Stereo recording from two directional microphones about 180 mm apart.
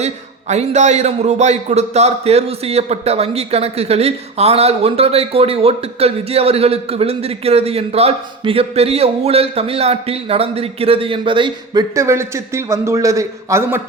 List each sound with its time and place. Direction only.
0.0 s a man's voice: 40° right (ahead or behind); by 13.8 s 15° right (ahead or behind)